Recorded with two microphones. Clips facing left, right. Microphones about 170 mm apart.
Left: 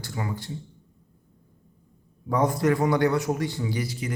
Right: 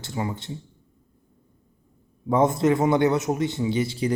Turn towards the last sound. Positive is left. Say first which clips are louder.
# right 6 dB
turn(degrees=-30)  # may be behind; listen again after turning